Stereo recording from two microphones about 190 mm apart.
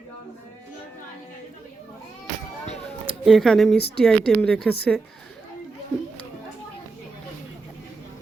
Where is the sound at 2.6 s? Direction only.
35° left (ahead or behind).